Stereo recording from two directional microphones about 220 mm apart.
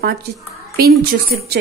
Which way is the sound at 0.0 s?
45° right (ahead or behind).